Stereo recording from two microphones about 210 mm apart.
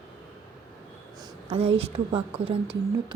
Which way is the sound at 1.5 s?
30° right (ahead or behind).